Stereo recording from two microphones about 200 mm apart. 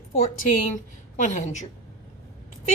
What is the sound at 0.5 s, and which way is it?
A woman's voice, 40° left (ahead or behind).